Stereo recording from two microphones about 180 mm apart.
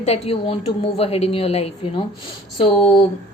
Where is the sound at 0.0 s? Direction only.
35° left (ahead or behind).